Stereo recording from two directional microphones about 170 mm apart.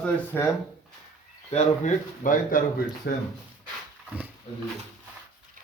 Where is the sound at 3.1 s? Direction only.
70° left (ahead or behind).